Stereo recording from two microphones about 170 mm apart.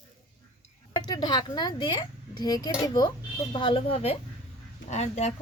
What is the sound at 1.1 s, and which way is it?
A child's voice, 25° left (ahead or behind).